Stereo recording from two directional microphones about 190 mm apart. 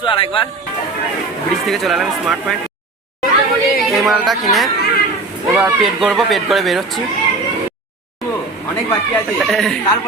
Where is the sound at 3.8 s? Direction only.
Centre (ahead or behind).